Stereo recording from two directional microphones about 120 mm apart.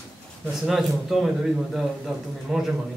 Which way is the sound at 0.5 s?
Centre (ahead or behind).